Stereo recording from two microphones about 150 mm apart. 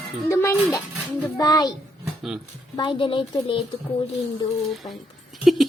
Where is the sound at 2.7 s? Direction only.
30° left (ahead or behind).